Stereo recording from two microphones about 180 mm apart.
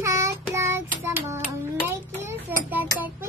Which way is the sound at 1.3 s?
15° right (ahead or behind).